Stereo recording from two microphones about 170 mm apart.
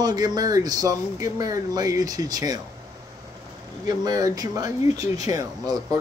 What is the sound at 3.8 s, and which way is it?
Speech, 20° right (ahead or behind).